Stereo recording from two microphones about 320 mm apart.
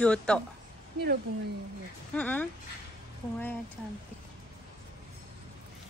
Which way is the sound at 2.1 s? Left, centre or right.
Centre.